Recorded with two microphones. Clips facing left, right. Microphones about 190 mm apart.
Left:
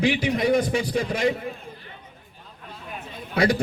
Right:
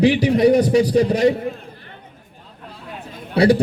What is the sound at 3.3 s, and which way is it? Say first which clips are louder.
Speech: right 7 dB; 35° right (ahead or behind).